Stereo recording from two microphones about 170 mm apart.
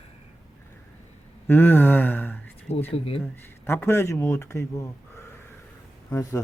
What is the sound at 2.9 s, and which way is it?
Speech, 35° left (ahead or behind).